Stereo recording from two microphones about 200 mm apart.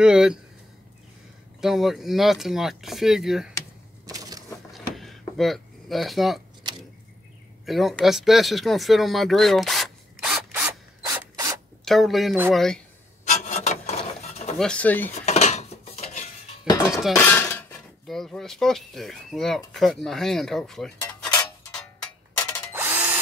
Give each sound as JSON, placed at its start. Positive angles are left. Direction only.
{"t": 0.0, "sound": "speech", "side_deg": -5}
{"t": 1.6, "sound": "speech", "side_deg": 0}
{"t": 4.0, "sound": "crushing", "side_deg": -20}
{"t": 4.7, "sound": "a sound", "side_deg": 0}
{"t": 7.6, "sound": "speech", "side_deg": 0}
{"t": 11.0, "sound": "mechanisms", "side_deg": -15}
{"t": 11.8, "sound": "speech", "side_deg": 0}
{"t": 13.2, "sound": "a sound", "side_deg": 35}
{"t": 14.6, "sound": "speech", "side_deg": 5}
{"t": 15.2, "sound": "cutlery", "side_deg": 35}
{"t": 16.9, "sound": "speech", "side_deg": 0}
{"t": 17.3, "sound": "speech", "side_deg": 10}
{"t": 22.4, "sound": "tools", "side_deg": 10}
{"t": 22.7, "sound": "drill", "side_deg": -10}